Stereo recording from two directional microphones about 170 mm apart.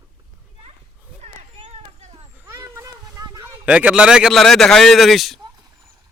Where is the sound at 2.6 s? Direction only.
15° right (ahead or behind).